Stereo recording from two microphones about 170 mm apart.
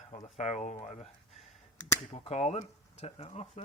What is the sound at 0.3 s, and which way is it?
Speech, 45° left (ahead or behind).